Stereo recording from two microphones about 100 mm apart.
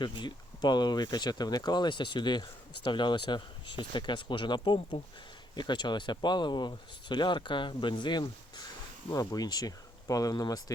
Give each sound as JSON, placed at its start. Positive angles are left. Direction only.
{"t": 0.0, "sound": "speech", "side_deg": 45}